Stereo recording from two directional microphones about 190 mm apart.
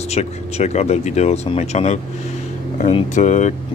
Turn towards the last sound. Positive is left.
turn(degrees=40)  # may be behind; listen again after turning